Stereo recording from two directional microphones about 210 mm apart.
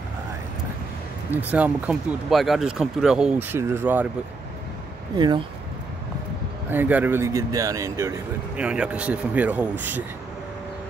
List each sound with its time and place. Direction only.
1.3 s speech: 5° right (ahead or behind)
5.1 s speech: 20° right (ahead or behind)
6.7 s speech: 10° right (ahead or behind)
8.5 s speech: 5° right (ahead or behind)